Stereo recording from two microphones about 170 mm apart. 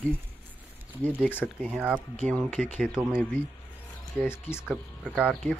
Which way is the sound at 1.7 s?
10° right (ahead or behind).